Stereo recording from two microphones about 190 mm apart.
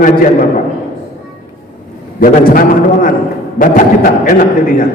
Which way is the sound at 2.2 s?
50° left (ahead or behind).